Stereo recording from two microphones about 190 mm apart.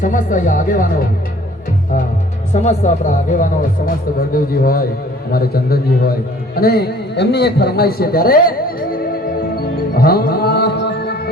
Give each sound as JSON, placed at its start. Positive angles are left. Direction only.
{"t": 0.0, "sound": "speech", "side_deg": 45}
{"t": 2.5, "sound": "a man's voice", "side_deg": 40}
{"t": 9.6, "sound": "music", "side_deg": 55}